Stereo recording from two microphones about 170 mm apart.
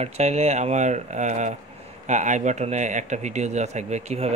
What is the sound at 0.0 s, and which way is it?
Speech, 40° right (ahead or behind).